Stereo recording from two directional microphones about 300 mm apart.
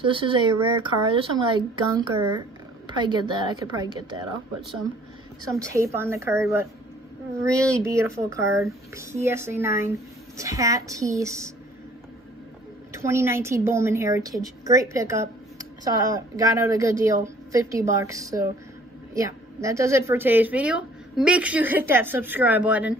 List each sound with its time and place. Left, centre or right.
0.0 s a woman's voice: centre
5.6 s a woman's voice: centre
7.7 s a woman's voice: centre
12.9 s a woman's voice: centre